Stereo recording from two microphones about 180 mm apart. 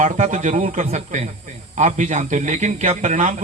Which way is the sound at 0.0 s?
45° right (ahead or behind).